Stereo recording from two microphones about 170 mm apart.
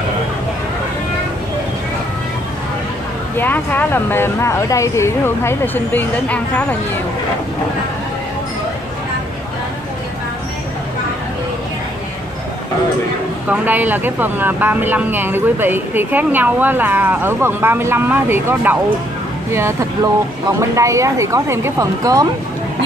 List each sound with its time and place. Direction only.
3.3 s speech: 10° left (ahead or behind)
13.5 s speech: 10° right (ahead or behind)